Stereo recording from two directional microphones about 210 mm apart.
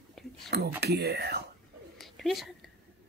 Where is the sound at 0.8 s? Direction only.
50° right (ahead or behind).